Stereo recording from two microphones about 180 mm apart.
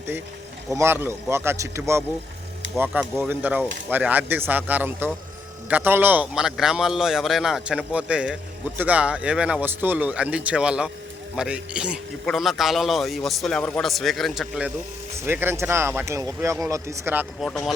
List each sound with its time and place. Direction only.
0.8 s a man's voice: 15° right (ahead or behind)
17.4 s a man's voice: centre (ahead or behind)